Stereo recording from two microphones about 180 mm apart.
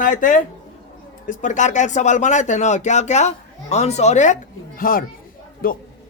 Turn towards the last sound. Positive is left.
turn(degrees=55)  # may be behind; listen again after turning